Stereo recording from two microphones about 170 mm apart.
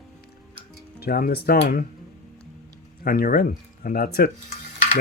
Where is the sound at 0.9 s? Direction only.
65° left (ahead or behind).